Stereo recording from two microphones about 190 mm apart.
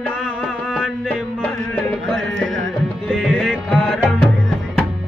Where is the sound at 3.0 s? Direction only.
Centre (ahead or behind).